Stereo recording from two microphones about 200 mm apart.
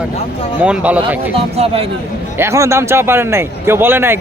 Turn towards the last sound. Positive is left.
turn(degrees=-10)  # may be behind; listen again after turning